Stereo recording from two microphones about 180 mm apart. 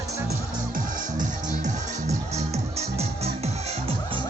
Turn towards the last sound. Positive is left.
turn(degrees=-30)  # may be behind; listen again after turning